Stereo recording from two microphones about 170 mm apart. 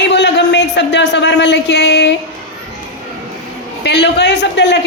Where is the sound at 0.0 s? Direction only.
90° left.